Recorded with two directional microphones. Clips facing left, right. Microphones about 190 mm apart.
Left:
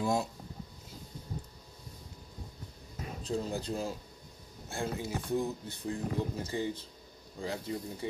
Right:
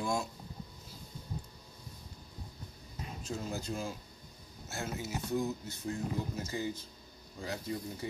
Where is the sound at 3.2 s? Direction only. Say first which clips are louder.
Left 5 dB; 35° left (ahead or behind).